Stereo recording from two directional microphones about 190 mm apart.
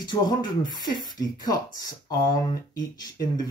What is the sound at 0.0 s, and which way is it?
Speech, 25° left (ahead or behind).